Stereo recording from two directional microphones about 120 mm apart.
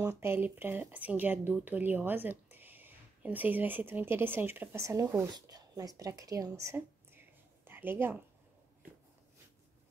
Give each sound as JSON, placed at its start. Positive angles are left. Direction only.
{"t": 0.2, "sound": "speech", "side_deg": -20}